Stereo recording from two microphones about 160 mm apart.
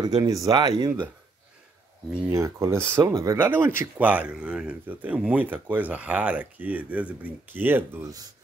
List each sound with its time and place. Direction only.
0.0 s speech: 25° right (ahead or behind)
2.2 s speech: 20° right (ahead or behind)